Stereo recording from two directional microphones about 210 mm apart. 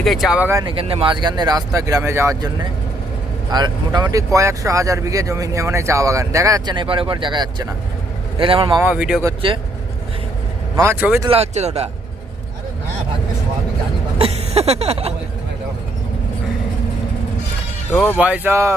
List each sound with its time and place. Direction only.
0.0 s speech: centre (ahead or behind)
0.6 s speech: 25° right (ahead or behind)
3.5 s speech: 20° right (ahead or behind)
8.8 s speech: 5° right (ahead or behind)
9.2 s speech: 25° right (ahead or behind)
10.8 s speech: 10° right (ahead or behind)
11.3 s speech: 30° right (ahead or behind)
14.2 s a sound: 30° right (ahead or behind)
17.9 s speech: 10° left (ahead or behind)
18.2 s speech: 10° right (ahead or behind)